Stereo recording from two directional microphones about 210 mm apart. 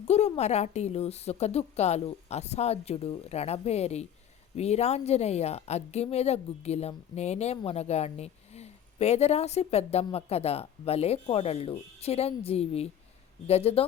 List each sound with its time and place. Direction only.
0.1 s a woman's voice: 30° left (ahead or behind)